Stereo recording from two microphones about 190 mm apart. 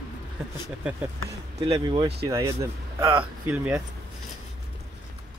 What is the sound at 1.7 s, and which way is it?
Speech, 25° right (ahead or behind).